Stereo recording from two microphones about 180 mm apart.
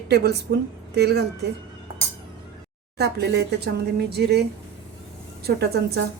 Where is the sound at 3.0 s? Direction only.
65° right (ahead or behind).